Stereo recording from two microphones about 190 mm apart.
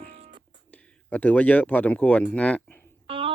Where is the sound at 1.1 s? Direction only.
5° left (ahead or behind).